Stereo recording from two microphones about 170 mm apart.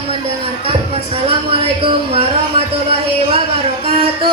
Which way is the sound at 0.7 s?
35° right (ahead or behind).